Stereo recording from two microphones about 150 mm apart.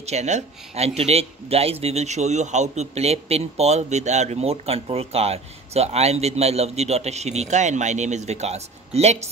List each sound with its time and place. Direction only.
0.0 s a man's voice: 50° right (ahead or behind)